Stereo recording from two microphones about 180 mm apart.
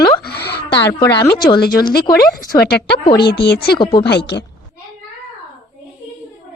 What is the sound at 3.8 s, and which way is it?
Speech, 25° left (ahead or behind).